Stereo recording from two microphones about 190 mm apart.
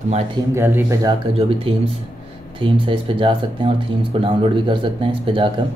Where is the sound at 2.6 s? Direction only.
25° right (ahead or behind).